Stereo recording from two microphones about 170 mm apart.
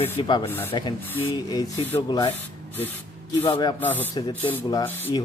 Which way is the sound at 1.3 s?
25° left (ahead or behind).